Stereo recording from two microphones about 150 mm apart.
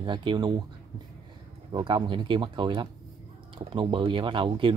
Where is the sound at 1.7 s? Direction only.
30° right (ahead or behind).